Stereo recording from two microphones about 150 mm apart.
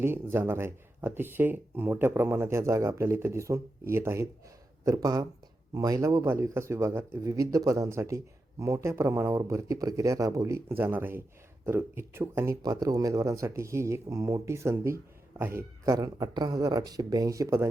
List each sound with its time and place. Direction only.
0.0 s speech: 15° right (ahead or behind)